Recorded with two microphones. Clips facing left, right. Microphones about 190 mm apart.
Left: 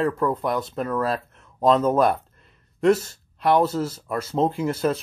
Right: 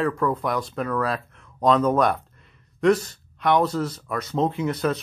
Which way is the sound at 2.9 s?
30° left (ahead or behind).